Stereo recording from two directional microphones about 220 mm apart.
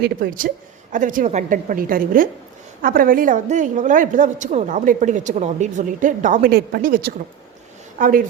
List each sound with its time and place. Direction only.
0.0 s a woman's voice: 40° right (ahead or behind)